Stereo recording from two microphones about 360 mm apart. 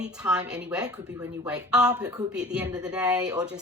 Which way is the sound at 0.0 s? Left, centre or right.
Centre.